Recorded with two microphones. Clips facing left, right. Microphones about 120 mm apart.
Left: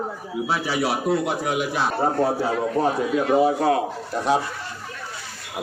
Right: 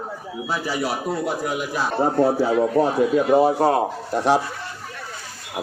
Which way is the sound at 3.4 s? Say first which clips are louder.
Right 2 dB; 35° right (ahead or behind).